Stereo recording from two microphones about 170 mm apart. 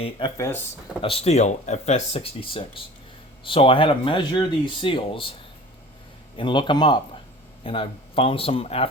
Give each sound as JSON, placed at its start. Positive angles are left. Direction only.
{"t": 0.3, "sound": "speech", "side_deg": 15}
{"t": 1.0, "sound": "speech", "side_deg": 35}
{"t": 6.3, "sound": "a man's voice", "side_deg": 30}